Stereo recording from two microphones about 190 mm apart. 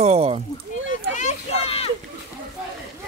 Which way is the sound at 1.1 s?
35° left (ahead or behind).